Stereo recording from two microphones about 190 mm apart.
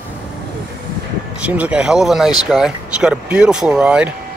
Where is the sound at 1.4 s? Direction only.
5° right (ahead or behind).